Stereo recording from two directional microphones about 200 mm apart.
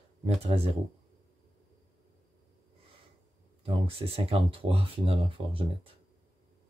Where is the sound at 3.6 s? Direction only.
30° right (ahead or behind).